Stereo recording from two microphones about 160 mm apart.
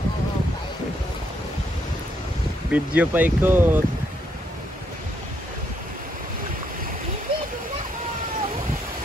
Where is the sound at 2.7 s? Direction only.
10° right (ahead or behind).